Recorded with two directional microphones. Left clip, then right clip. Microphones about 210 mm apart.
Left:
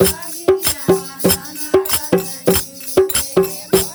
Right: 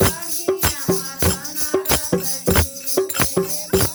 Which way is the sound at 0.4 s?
50° left (ahead or behind).